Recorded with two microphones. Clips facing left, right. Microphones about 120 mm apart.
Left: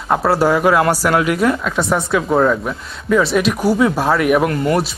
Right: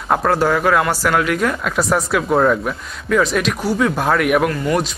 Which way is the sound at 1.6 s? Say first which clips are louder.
Even; centre (ahead or behind).